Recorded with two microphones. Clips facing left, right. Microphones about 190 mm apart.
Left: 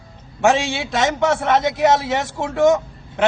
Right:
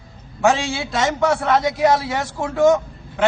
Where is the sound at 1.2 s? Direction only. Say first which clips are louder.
Right 1 dB; centre (ahead or behind).